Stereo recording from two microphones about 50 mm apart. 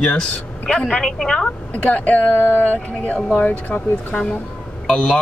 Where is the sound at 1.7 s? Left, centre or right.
Left.